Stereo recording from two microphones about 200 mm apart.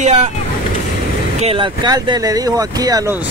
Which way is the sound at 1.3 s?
30° right (ahead or behind).